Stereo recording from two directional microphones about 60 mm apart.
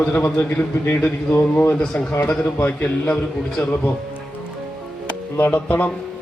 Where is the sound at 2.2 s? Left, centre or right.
Left.